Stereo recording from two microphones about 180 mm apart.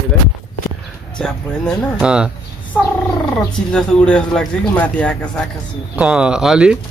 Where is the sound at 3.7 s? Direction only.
5° left (ahead or behind).